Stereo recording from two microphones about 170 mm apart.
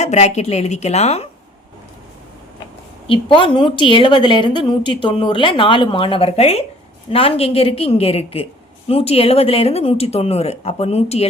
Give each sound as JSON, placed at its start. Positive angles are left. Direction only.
{"t": 0.0, "sound": "speech", "side_deg": 40}
{"t": 3.1, "sound": "a woman's voice", "side_deg": 30}